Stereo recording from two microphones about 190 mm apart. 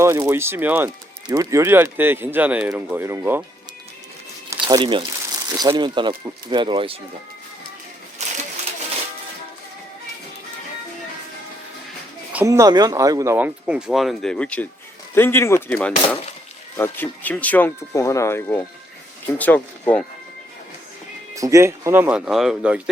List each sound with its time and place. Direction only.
0.0 s speech: 15° right (ahead or behind)
4.4 s speech: 20° right (ahead or behind)
8.2 s a sound: 35° right (ahead or behind)
12.3 s speech: 10° right (ahead or behind); by 20.1 s 5° left (ahead or behind)
21.3 s speech: 15° right (ahead or behind)